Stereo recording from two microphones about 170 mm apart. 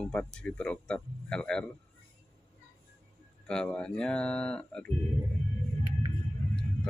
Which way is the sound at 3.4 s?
5° left (ahead or behind).